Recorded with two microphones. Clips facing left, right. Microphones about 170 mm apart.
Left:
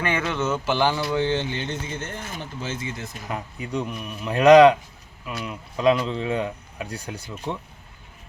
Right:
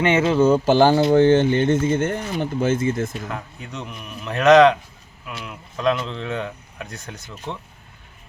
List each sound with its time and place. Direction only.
0.0 s speech: 25° right (ahead or behind); by 3.2 s 50° right (ahead or behind)
3.2 s speech: 10° left (ahead or behind)